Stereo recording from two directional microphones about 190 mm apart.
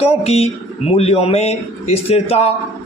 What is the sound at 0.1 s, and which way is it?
Speech, 30° left (ahead or behind).